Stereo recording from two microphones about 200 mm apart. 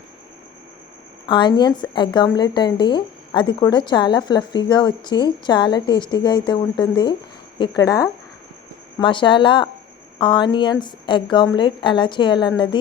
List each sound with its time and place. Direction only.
1.3 s speech: 25° left (ahead or behind)